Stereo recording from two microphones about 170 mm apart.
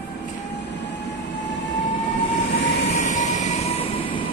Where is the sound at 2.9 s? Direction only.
50° left (ahead or behind); by 4.3 s 30° left (ahead or behind).